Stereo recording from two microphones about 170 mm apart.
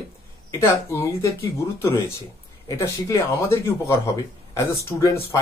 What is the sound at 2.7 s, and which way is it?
Speech, 15° left (ahead or behind).